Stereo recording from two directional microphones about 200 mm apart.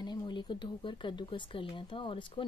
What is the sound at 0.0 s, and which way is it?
Speech, 20° left (ahead or behind).